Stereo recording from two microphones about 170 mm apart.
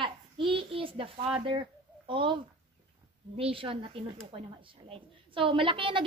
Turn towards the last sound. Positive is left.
turn(degrees=-30)  # may be behind; listen again after turning